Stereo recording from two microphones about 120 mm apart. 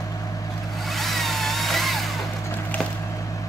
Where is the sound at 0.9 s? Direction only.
Centre (ahead or behind).